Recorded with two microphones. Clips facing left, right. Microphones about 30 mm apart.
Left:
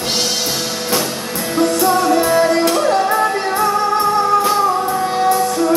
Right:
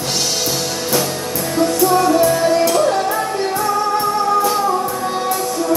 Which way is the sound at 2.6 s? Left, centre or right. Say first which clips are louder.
Left 1 dB; left.